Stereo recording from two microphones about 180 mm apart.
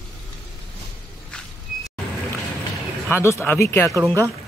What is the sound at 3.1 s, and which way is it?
Speech, 15° left (ahead or behind).